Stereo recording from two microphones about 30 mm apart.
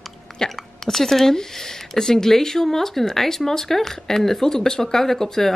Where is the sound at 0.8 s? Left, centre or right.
Centre.